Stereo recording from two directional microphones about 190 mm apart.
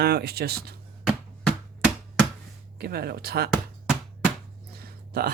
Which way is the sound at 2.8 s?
55° right (ahead or behind).